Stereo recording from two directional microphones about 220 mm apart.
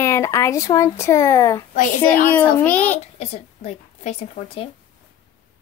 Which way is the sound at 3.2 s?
30° left (ahead or behind).